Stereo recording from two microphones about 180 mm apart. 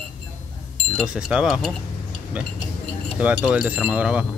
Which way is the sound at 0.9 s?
5° right (ahead or behind).